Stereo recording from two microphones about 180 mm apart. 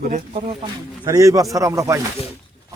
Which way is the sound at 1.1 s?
20° right (ahead or behind).